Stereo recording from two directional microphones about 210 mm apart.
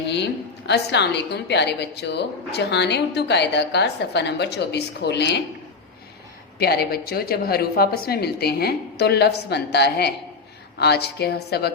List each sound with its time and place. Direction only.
0.7 s a woman's voice: 55° left (ahead or behind)
6.6 s a woman's voice: 50° left (ahead or behind)